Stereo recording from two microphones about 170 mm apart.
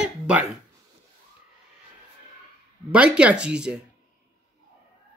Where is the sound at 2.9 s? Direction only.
5° right (ahead or behind).